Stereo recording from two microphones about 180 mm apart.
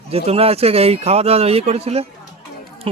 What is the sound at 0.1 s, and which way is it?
A man's voice, 35° right (ahead or behind).